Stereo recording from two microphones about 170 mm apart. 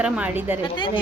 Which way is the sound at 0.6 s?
30° left (ahead or behind).